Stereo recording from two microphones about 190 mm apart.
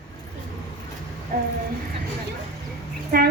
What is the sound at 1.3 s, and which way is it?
Speech, 50° right (ahead or behind).